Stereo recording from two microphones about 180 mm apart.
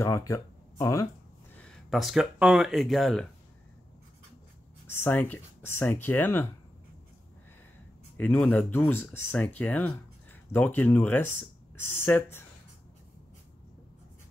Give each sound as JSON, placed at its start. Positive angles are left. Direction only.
{"t": 0.0, "sound": "speech", "side_deg": 15}
{"t": 1.6, "sound": "speech", "side_deg": 0}
{"t": 4.8, "sound": "speech", "side_deg": 10}
{"t": 8.2, "sound": "speech", "side_deg": 10}